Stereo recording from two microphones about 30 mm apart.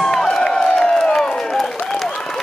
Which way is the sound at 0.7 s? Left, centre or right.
Left.